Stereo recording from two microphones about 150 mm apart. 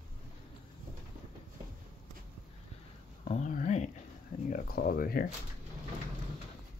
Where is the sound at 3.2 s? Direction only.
55° left (ahead or behind).